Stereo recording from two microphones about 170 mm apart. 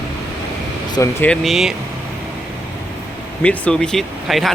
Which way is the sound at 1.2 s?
Centre (ahead or behind).